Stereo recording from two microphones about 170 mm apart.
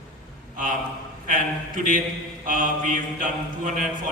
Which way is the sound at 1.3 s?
55° right (ahead or behind).